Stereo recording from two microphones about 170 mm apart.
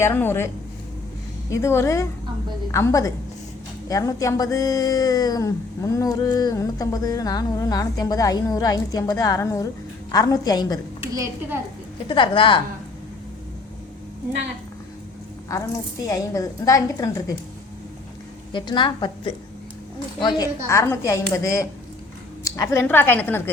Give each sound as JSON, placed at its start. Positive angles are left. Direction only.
{"t": 0.0, "sound": "a woman's voice", "side_deg": 10}
{"t": 11.1, "sound": "a woman's voice", "side_deg": -15}
{"t": 12.0, "sound": "speech", "side_deg": 30}
{"t": 15.4, "sound": "speech", "side_deg": 20}
{"t": 18.5, "sound": "a woman's voice", "side_deg": 25}